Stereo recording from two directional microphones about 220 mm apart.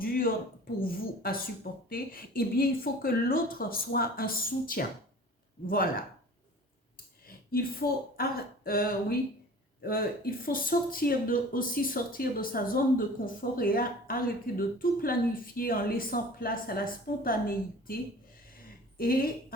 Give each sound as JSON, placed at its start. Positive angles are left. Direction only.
{"t": 0.0, "sound": "a sound", "side_deg": 40}
{"t": 0.8, "sound": "speech", "side_deg": 40}
{"t": 7.3, "sound": "a woman's voice", "side_deg": 40}